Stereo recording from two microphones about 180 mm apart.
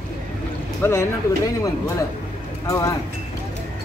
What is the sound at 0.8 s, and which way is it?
Speech, 15° left (ahead or behind).